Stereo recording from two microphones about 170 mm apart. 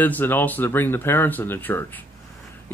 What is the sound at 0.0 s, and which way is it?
Speech, 10° left (ahead or behind).